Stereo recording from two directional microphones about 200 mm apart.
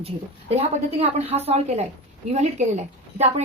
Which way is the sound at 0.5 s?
30° right (ahead or behind).